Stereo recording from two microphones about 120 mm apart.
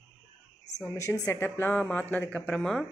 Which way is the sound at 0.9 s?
25° left (ahead or behind).